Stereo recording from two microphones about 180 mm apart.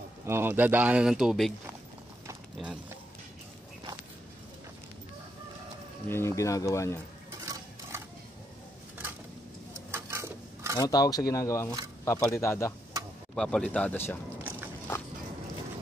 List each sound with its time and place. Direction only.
0.3 s speech: 10° right (ahead or behind)
2.5 s speech: 5° right (ahead or behind)
6.0 s speech: 15° left (ahead or behind)
9.9 s a sound: 15° right (ahead or behind)
10.8 s speech: 20° left (ahead or behind)
13.3 s speech: 5° left (ahead or behind)
14.4 s biting: 10° right (ahead or behind)